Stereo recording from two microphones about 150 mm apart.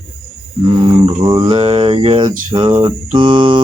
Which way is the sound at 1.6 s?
40° right (ahead or behind).